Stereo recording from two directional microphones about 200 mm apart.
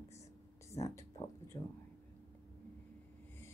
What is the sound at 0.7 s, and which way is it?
Speech, 15° left (ahead or behind).